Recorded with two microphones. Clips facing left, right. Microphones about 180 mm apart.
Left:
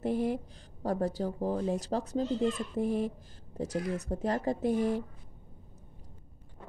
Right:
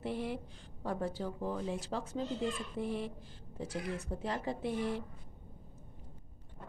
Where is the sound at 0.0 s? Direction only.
45° left (ahead or behind).